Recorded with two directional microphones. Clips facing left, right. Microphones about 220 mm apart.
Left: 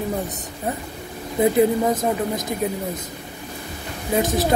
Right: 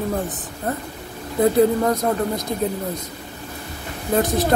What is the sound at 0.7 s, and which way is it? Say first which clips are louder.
A child's voice: right 1 dB; 10° left (ahead or behind).